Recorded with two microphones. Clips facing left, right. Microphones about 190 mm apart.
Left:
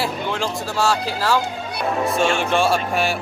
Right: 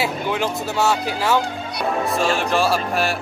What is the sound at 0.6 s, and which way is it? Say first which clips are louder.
Speech: even; 20° right (ahead or behind).